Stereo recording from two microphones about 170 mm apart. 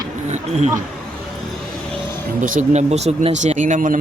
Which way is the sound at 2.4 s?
50° right (ahead or behind).